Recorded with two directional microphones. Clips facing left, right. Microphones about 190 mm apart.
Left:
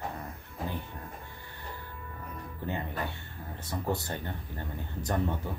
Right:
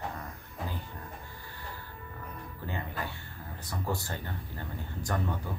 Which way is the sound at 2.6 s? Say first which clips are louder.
Left 3 dB; 20° left (ahead or behind).